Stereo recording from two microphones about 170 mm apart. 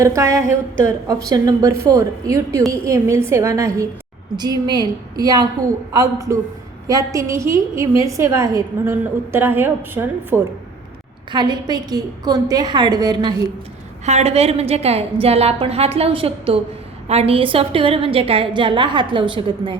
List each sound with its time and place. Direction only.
0.0 s a woman's voice: 20° right (ahead or behind)
11.3 s a woman's voice: 25° right (ahead or behind)
14.0 s a woman's voice: 40° right (ahead or behind)